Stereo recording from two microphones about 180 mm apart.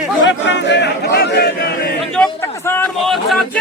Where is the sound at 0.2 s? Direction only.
90° left; by 1.5 s 65° left (ahead or behind).